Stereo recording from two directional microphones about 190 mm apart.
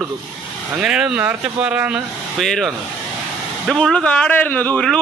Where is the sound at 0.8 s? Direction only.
5° right (ahead or behind).